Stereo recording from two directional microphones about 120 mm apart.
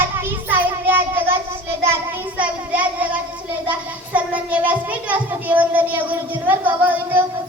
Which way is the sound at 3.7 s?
10° right (ahead or behind).